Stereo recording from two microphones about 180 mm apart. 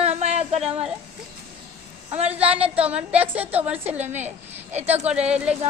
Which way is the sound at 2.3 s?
5° right (ahead or behind).